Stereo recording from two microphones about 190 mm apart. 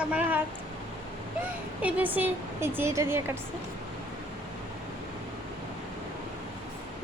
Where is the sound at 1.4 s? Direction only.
10° right (ahead or behind).